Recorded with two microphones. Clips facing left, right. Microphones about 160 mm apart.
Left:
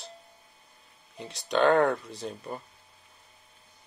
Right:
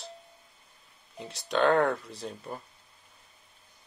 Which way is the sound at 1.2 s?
Centre (ahead or behind).